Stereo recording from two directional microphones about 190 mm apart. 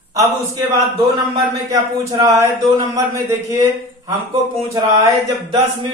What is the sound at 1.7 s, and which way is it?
A man's voice, 20° right (ahead or behind).